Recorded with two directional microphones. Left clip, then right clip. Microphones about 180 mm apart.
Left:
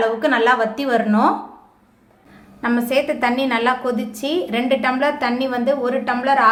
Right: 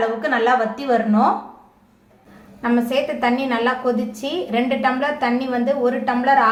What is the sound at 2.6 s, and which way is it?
A woman's voice, 30° left (ahead or behind).